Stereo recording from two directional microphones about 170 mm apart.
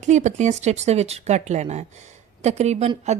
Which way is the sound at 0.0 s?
45° right (ahead or behind).